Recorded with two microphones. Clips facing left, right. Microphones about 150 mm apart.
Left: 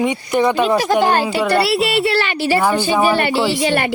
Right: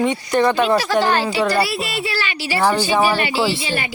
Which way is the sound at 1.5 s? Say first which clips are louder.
Left 5 dB; 70° left (ahead or behind).